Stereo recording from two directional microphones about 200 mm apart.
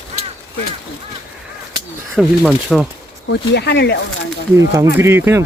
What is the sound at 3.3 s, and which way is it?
Speech, 55° left (ahead or behind).